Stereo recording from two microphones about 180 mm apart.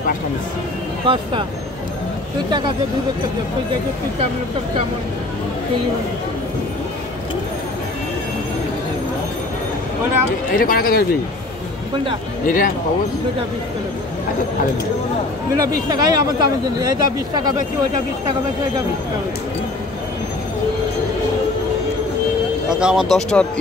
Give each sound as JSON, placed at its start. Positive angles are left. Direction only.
{"t": 1.0, "sound": "speech", "side_deg": -30}
{"t": 10.5, "sound": "speech", "side_deg": 55}
{"t": 12.4, "sound": "speech", "side_deg": 50}
{"t": 15.5, "sound": "speech", "side_deg": -20}
{"t": 22.7, "sound": "speech", "side_deg": -5}